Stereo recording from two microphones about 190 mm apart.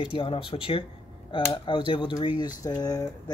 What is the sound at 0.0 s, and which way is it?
A man's voice, 25° left (ahead or behind).